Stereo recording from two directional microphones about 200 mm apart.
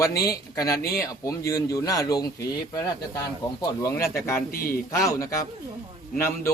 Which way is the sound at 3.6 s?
15° left (ahead or behind).